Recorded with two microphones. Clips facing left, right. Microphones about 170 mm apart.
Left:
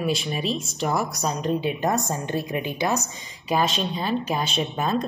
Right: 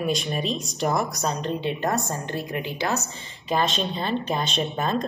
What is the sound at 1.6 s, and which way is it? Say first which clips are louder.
A woman's voice: left 1 dB; 10° left (ahead or behind).